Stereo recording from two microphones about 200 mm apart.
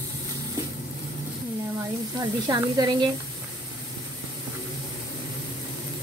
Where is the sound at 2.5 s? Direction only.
20° right (ahead or behind).